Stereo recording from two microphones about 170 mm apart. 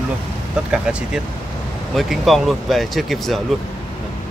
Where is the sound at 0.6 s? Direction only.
5° right (ahead or behind).